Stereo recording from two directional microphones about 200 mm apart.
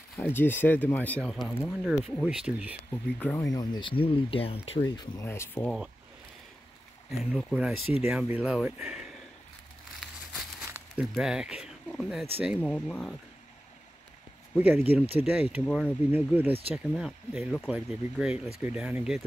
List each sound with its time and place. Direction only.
0.2 s speech: 10° left (ahead or behind); by 2.7 s 5° right (ahead or behind)
3.2 s speech: 10° left (ahead or behind)
3.5 s speech: 20° left (ahead or behind)
7.1 s speech: centre (ahead or behind)
10.0 s a sound: centre (ahead or behind)
10.6 s speech: 5° right (ahead or behind)
14.6 s speech: 10° right (ahead or behind)